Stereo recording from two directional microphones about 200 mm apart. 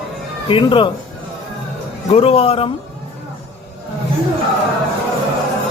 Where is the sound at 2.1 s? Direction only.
30° left (ahead or behind).